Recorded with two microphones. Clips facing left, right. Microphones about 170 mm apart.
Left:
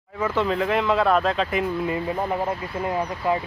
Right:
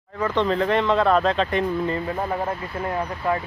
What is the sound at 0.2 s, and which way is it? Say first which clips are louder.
Speech: right 1 dB; 5° left (ahead or behind).